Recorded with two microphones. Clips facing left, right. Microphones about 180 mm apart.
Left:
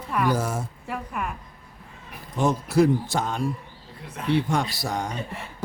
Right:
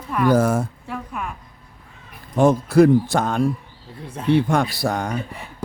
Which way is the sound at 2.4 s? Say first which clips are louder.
Right 6 dB; 55° right (ahead or behind).